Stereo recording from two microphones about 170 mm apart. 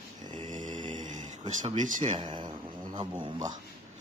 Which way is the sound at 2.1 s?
25° right (ahead or behind).